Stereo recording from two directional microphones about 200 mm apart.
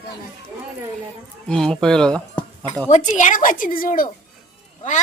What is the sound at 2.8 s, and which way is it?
A woman's voice, 35° left (ahead or behind).